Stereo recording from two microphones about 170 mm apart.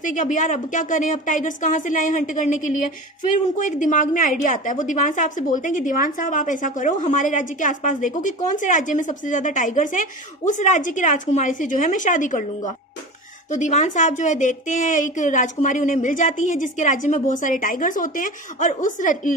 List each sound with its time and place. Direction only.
0.0 s a woman's voice: 50° left (ahead or behind)
3.5 s a woman's voice: 50° left (ahead or behind)